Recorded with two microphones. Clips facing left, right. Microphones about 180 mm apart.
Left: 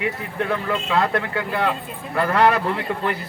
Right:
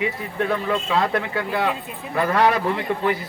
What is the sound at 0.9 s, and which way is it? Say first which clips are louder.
A man's voice: left 2 dB; 10° right (ahead or behind).